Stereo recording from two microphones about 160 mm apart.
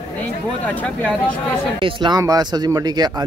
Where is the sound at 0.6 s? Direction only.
10° left (ahead or behind).